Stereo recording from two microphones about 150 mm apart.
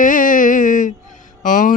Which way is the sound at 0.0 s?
65° left (ahead or behind).